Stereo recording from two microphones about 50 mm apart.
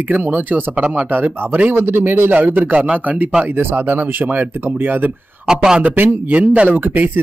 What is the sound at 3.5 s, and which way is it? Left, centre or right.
Speech, right.